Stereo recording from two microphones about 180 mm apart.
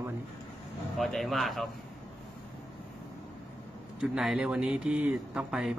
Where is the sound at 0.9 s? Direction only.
Centre (ahead or behind).